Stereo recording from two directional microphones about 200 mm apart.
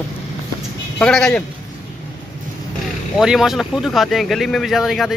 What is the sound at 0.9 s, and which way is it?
Speech, 5° left (ahead or behind).